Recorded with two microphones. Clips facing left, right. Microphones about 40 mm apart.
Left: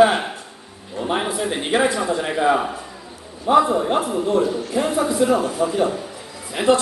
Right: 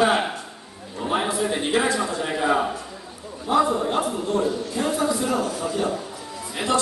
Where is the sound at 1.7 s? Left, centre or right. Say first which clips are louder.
Left 4 dB; left.